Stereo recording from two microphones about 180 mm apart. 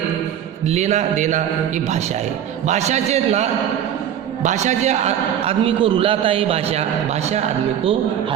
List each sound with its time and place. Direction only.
0.7 s a man's voice: 40° right (ahead or behind)
2.6 s a man's voice: 40° right (ahead or behind)